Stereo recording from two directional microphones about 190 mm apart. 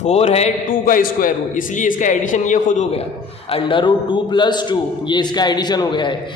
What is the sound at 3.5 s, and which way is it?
A man's voice, 25° left (ahead or behind).